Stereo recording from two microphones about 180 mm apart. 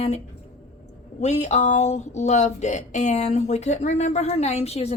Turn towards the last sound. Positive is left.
turn(degrees=35)  # may be behind; listen again after turning